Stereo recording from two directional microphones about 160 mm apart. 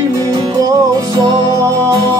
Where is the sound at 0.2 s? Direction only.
25° right (ahead or behind).